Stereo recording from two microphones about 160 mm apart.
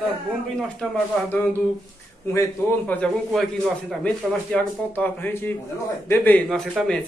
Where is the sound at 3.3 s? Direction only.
Centre (ahead or behind).